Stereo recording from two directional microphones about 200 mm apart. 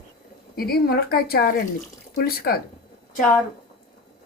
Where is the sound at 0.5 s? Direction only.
50° left (ahead or behind).